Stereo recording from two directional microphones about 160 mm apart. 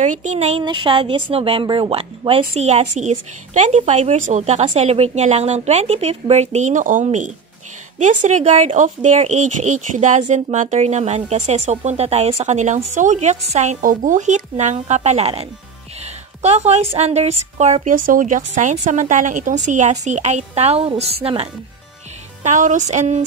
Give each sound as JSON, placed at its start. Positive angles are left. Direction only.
{"t": 0.0, "sound": "speech", "side_deg": -50}
{"t": 0.6, "sound": "speech", "side_deg": -35}
{"t": 16.4, "sound": "speech", "side_deg": -45}
{"t": 17.9, "sound": "speech", "side_deg": -60}
{"t": 22.4, "sound": "speech", "side_deg": -50}